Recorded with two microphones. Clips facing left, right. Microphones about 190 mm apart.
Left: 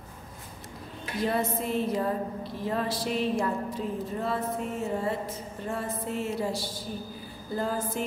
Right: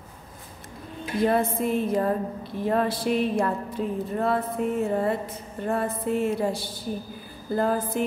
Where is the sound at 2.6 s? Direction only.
55° right (ahead or behind).